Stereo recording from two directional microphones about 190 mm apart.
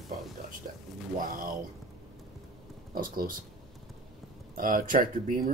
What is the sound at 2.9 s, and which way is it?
Speech, 45° right (ahead or behind).